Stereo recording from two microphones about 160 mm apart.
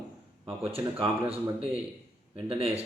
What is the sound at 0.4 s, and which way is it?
Speech, 35° right (ahead or behind).